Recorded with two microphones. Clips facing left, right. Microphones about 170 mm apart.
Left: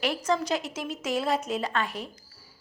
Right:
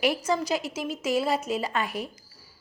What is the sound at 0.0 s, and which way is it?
A woman's voice, 10° right (ahead or behind).